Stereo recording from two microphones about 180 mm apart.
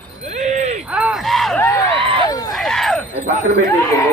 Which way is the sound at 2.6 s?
Centre (ahead or behind).